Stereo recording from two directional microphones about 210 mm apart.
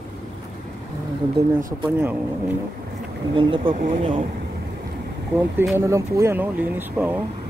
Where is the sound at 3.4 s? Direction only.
25° right (ahead or behind).